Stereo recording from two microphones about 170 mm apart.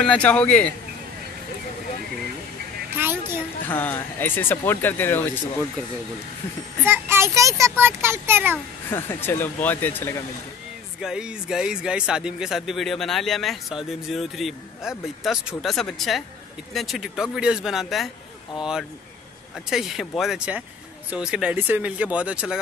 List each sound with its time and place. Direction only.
0.0 s speech: 5° left (ahead or behind)
3.0 s a child's voice: 15° right (ahead or behind)
3.6 s speech: 10° left (ahead or behind)
6.9 s a child's voice: 15° right (ahead or behind)
8.9 s speech: 15° left (ahead or behind)
11.0 s a child's voice: 5° right (ahead or behind)